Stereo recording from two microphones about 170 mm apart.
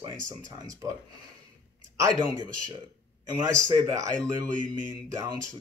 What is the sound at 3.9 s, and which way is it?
Speech, 20° right (ahead or behind).